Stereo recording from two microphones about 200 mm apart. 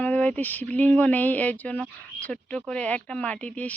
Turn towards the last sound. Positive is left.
turn(degrees=5)  # may be behind; listen again after turning